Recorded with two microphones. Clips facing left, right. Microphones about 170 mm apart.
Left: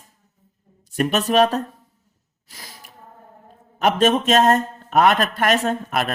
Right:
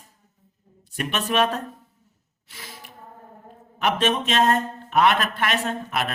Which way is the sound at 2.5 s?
40° left (ahead or behind).